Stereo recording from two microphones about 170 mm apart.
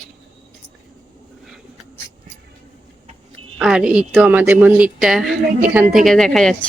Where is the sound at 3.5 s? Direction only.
5° right (ahead or behind).